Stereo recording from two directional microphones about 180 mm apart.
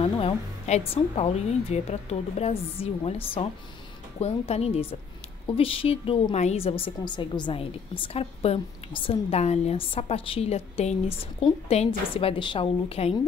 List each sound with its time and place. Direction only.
0.0 s a woman's voice: 30° left (ahead or behind)